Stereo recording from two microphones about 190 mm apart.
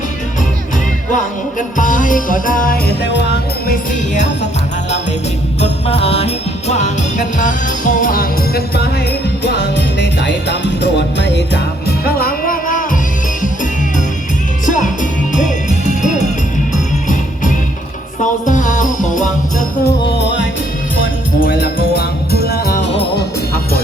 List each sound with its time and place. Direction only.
1.5 s jingle bell: 45° left (ahead or behind)
3.7 s music: 40° left (ahead or behind)
5.5 s music: 30° left (ahead or behind); by 8.9 s 55° left (ahead or behind)
9.4 s music: 65° left (ahead or behind); by 12.8 s 45° left (ahead or behind)
16.7 s music: 40° left (ahead or behind)
20.0 s music: 65° left (ahead or behind)
21.4 s music: 55° left (ahead or behind)